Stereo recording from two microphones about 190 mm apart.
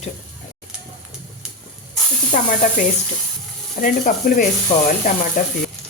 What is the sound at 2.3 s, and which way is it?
A woman's voice, 45° left (ahead or behind).